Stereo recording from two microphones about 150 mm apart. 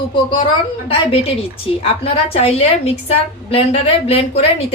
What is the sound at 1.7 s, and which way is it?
A woman's voice, 40° left (ahead or behind).